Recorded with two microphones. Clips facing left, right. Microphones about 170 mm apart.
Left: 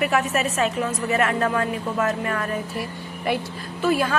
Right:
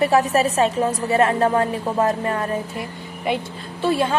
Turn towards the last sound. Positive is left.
turn(degrees=-25)  # may be behind; listen again after turning